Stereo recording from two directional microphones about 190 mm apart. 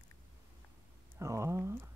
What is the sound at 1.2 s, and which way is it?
Speech, 15° right (ahead or behind).